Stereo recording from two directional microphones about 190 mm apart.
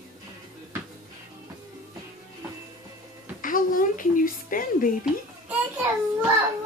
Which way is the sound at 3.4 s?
45° left (ahead or behind).